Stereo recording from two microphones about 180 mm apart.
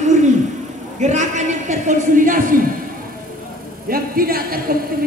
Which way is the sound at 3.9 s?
55° right (ahead or behind).